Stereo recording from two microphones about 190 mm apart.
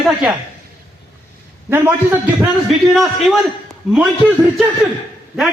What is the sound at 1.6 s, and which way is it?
Speech, 10° right (ahead or behind).